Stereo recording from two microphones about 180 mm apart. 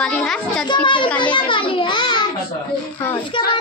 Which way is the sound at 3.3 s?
25° left (ahead or behind).